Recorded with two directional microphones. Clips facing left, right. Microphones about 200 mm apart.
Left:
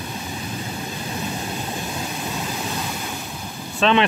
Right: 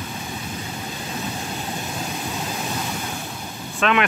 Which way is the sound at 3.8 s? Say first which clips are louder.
Left 3 dB; 30° left (ahead or behind).